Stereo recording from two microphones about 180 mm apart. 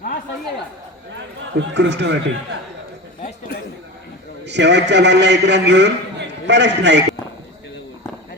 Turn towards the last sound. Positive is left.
turn(degrees=-80)